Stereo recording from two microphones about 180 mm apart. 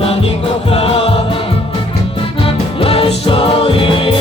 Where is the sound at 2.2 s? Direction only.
30° left (ahead or behind).